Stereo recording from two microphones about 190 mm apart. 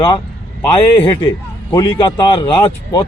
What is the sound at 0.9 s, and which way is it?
A man's voice, 10° left (ahead or behind).